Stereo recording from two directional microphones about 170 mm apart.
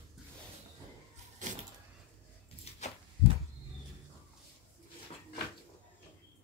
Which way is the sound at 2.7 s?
35° left (ahead or behind).